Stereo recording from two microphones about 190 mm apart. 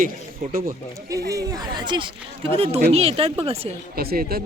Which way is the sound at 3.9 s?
55° right (ahead or behind).